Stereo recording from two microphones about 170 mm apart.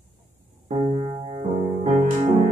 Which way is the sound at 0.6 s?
35° right (ahead or behind).